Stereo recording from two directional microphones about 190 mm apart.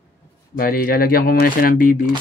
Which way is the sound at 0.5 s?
50° left (ahead or behind).